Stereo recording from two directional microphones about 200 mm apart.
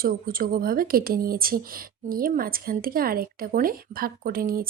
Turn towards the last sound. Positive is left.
turn(degrees=-45)  # may be behind; listen again after turning